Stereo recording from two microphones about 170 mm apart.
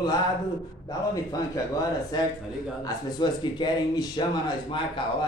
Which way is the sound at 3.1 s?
25° left (ahead or behind).